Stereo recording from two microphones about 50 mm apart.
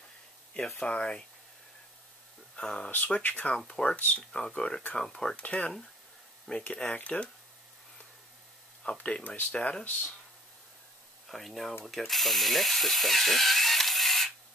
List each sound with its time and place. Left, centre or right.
0.7 s speech: centre
2.5 s speech: centre
2.9 s speech: left
3.5 s speech: centre
5.3 s speech: left
8.8 s speech: left
11.2 s speech: centre